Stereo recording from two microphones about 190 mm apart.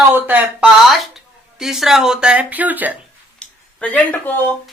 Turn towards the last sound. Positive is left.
turn(degrees=10)  # may be behind; listen again after turning